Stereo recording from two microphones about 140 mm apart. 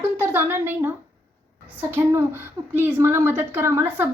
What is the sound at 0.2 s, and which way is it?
A woman's voice, 15° right (ahead or behind).